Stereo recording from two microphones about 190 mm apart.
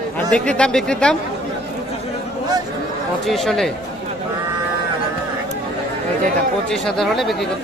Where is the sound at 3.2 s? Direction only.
Centre (ahead or behind).